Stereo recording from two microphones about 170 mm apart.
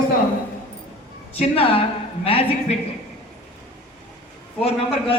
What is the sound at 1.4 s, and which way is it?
A man's voice, 35° left (ahead or behind).